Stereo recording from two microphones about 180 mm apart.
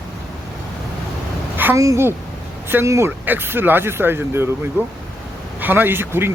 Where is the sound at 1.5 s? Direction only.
15° right (ahead or behind).